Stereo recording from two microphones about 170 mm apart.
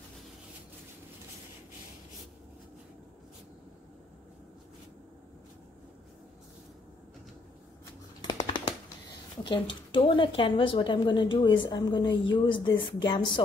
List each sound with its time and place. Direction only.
8.3 s typing: 25° left (ahead or behind)
9.4 s speech: 30° left (ahead or behind)